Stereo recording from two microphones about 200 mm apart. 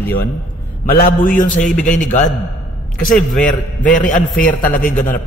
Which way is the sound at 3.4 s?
40° left (ahead or behind).